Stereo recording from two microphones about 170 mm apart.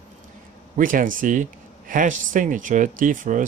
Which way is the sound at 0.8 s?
50° right (ahead or behind).